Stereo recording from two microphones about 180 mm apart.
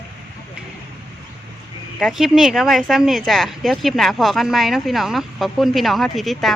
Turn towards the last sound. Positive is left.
turn(degrees=0)  # may be behind; listen again after turning